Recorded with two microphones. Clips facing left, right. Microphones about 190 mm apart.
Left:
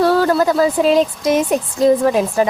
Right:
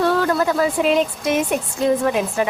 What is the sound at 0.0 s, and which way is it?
Speech, 35° left (ahead or behind).